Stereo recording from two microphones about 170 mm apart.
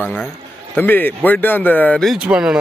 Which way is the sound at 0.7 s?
10° left (ahead or behind).